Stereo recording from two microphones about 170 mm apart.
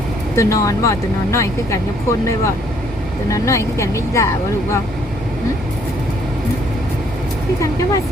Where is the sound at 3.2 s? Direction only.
20° left (ahead or behind).